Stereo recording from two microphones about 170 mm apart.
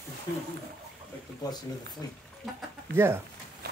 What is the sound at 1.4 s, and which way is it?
Speech, 20° left (ahead or behind).